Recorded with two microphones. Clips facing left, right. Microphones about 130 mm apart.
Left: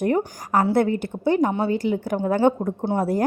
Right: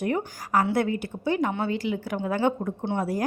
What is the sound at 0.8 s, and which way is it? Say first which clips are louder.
Speech: left 5 dB; 55° left (ahead or behind).